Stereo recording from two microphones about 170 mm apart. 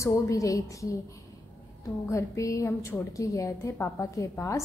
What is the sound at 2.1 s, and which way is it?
A woman's voice, 20° left (ahead or behind).